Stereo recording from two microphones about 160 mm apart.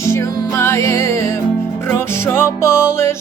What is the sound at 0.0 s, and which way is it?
Music, 15° left (ahead or behind).